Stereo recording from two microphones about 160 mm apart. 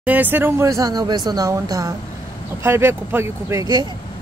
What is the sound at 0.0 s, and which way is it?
Speech, 10° right (ahead or behind).